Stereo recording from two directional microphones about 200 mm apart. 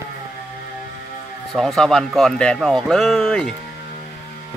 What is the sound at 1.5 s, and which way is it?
A man's voice, centre (ahead or behind).